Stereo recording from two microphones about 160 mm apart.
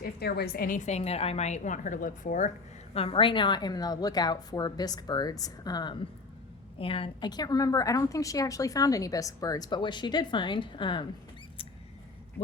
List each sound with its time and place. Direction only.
0.0 s a woman's voice: 80° left
0.9 s a woman's voice: 40° left (ahead or behind)
2.9 s a woman's voice: 35° left (ahead or behind)